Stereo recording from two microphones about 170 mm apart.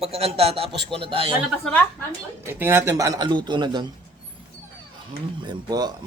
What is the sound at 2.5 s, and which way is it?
Speech, 15° right (ahead or behind).